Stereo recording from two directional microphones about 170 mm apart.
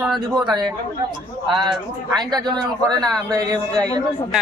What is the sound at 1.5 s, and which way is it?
Speech, 25° right (ahead or behind).